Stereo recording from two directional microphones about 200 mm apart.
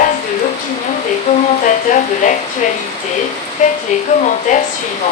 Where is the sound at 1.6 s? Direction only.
40° left (ahead or behind).